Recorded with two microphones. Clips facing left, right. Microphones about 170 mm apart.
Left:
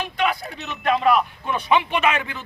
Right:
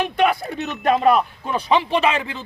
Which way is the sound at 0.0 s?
55° right (ahead or behind).